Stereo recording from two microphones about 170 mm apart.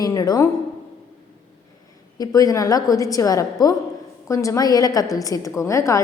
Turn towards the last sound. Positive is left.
turn(degrees=20)  # may be behind; listen again after turning